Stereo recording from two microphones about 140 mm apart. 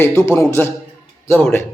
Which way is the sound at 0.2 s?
20° left (ahead or behind).